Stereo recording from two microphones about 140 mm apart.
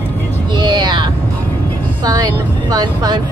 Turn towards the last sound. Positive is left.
turn(degrees=-30)  # may be behind; listen again after turning